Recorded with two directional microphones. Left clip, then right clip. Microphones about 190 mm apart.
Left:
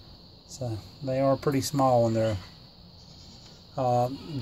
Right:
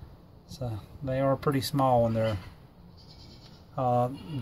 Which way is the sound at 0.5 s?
20° left (ahead or behind).